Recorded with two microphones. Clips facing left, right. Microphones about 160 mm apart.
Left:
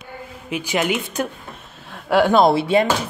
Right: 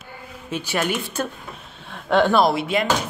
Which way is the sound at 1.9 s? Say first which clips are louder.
Left 2 dB; 10° left (ahead or behind).